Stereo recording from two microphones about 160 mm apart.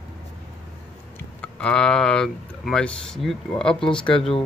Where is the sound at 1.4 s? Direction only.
5° left (ahead or behind).